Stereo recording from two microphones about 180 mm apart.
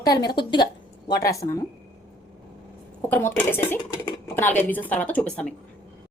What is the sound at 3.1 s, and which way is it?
Speech, 10° left (ahead or behind).